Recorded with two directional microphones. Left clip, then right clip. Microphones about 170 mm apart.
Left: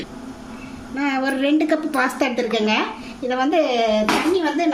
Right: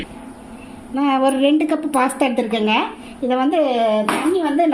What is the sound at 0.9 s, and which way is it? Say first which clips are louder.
A woman's voice: right 5 dB; 35° right (ahead or behind).